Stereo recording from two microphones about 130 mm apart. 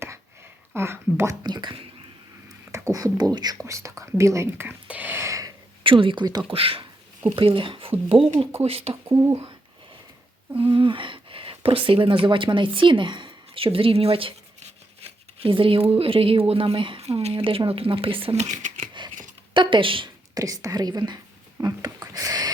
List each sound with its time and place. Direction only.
0.7 s speech: 20° right (ahead or behind)
1.5 s speech: 35° right (ahead or behind)
2.7 s speech: 25° right (ahead or behind)
5.8 s speech: 40° right (ahead or behind)
9.0 s speech: 20° right (ahead or behind)
10.6 s speech: 40° right (ahead or behind)
15.4 s speech: 45° right (ahead or behind)
18.4 s speech: 70° right (ahead or behind)
19.0 s a sound: 35° right (ahead or behind)
19.5 s speech: 40° right (ahead or behind)
20.3 s speech: 25° right (ahead or behind)